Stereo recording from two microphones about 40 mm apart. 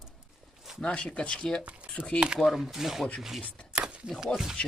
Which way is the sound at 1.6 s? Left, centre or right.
Right.